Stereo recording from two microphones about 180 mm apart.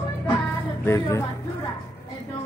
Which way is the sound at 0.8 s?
15° left (ahead or behind).